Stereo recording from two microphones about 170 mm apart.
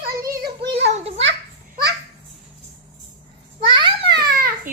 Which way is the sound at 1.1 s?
90° right.